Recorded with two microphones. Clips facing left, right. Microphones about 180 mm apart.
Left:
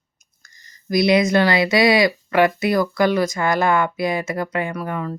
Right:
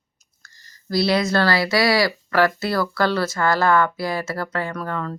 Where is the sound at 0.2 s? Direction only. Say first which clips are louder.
Right 1 dB; 15° left (ahead or behind).